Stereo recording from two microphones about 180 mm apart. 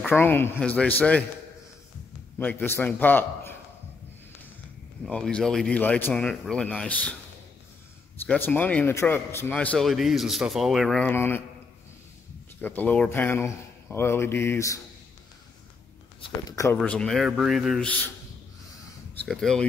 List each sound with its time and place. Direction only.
0.0 s a man's voice: 10° left (ahead or behind)
2.3 s a man's voice: 10° left (ahead or behind)
5.0 s speech: 5° left (ahead or behind)
8.3 s a man's voice: 10° left (ahead or behind)
12.6 s a man's voice: 10° left (ahead or behind)
16.4 s a man's voice: 15° left (ahead or behind)
16.8 s speech: 5° left (ahead or behind)
19.2 s speech: centre (ahead or behind)